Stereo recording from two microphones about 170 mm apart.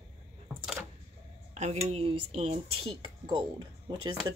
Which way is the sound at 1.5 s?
40° right (ahead or behind).